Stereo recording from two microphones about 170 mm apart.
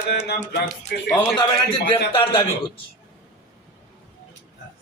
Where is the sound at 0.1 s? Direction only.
70° left (ahead or behind).